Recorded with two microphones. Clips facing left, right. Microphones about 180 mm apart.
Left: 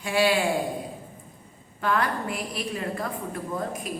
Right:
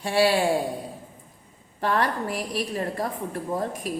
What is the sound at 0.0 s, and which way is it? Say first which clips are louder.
Speech: right 2 dB; 35° right (ahead or behind).